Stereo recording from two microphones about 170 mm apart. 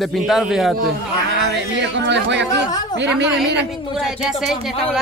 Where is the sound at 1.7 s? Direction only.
90° right.